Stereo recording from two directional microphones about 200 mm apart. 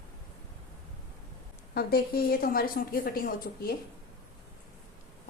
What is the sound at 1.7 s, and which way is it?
A woman's voice, 50° left (ahead or behind).